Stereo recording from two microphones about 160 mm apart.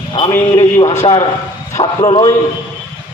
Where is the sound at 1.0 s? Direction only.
35° left (ahead or behind).